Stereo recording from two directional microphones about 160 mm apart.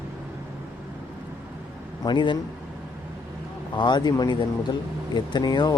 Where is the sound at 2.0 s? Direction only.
30° left (ahead or behind).